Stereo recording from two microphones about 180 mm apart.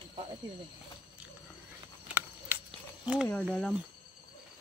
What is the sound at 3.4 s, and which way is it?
Speech, 5° left (ahead or behind).